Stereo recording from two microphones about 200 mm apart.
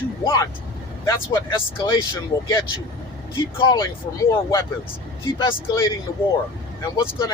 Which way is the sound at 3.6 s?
20° left (ahead or behind).